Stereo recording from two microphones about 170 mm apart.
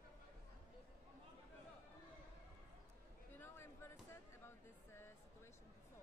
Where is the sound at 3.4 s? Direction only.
15° left (ahead or behind).